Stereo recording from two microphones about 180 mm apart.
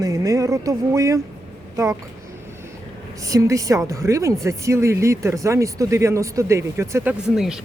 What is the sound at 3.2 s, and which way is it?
A woman's voice, 20° right (ahead or behind).